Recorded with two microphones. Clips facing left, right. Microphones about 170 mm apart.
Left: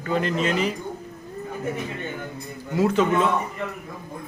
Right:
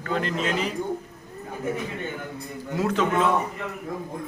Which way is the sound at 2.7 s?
Centre (ahead or behind).